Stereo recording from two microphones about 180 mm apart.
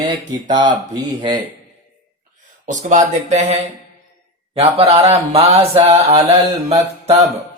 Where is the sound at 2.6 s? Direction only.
45° right (ahead or behind).